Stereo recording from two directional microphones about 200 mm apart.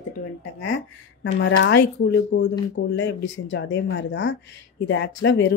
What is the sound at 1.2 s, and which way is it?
Speech, 60° left (ahead or behind).